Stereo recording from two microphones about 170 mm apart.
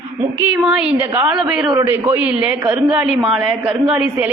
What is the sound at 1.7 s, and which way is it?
A man's voice, 20° right (ahead or behind).